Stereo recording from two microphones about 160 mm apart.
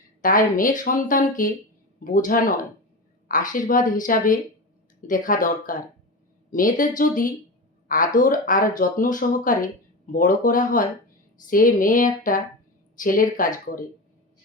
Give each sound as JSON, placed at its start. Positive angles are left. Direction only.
{"t": 0.2, "sound": "speech", "side_deg": 55}